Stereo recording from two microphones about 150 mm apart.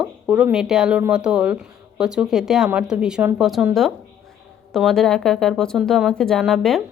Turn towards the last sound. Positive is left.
turn(degrees=0)  # may be behind; listen again after turning